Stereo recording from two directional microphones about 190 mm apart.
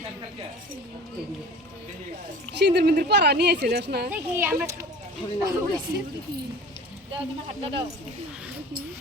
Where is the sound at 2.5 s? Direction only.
60° right (ahead or behind).